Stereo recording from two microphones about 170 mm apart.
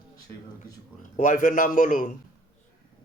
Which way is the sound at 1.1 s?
45° left (ahead or behind).